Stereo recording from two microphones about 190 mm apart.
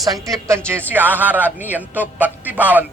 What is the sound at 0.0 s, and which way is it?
A man's voice, 20° right (ahead or behind).